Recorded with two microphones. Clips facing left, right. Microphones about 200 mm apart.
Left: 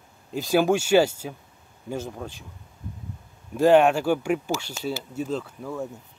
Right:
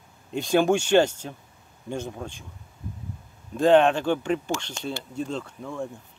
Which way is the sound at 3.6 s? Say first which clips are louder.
Left 1 dB; 10° left (ahead or behind).